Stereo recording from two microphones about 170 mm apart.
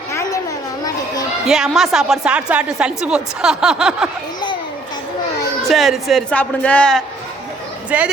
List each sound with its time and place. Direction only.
0.1 s a sound: 15° left (ahead or behind)
1.5 s a woman's voice: centre (ahead or behind)
5.6 s a woman's voice: centre (ahead or behind)
7.9 s speech: 10° right (ahead or behind)